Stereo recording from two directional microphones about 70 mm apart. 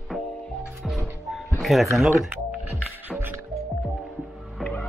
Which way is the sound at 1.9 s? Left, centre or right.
Centre.